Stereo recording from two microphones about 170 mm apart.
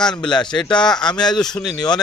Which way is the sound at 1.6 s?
25° left (ahead or behind).